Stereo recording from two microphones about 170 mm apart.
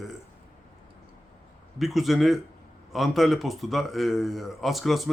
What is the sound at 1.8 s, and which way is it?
Speech, centre (ahead or behind).